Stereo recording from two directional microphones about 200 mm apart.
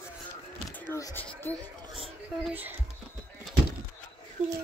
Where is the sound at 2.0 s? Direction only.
5° right (ahead or behind).